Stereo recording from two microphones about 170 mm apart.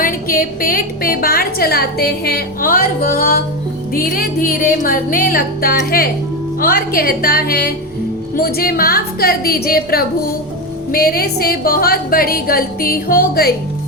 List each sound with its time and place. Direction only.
0.0 s a woman's voice: 55° left (ahead or behind)